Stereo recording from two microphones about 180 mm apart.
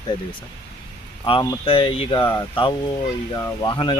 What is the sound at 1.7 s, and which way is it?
Speech, 30° left (ahead or behind).